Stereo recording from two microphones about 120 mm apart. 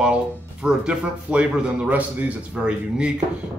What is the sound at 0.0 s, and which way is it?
Speech, 5° right (ahead or behind).